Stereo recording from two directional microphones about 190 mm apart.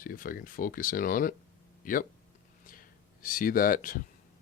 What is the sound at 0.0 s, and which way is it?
Speech, 50° left (ahead or behind).